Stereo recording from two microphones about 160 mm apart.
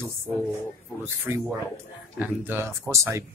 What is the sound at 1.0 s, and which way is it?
Speech, 15° right (ahead or behind).